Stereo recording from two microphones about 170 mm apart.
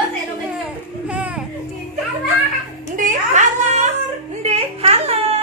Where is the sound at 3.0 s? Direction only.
45° right (ahead or behind).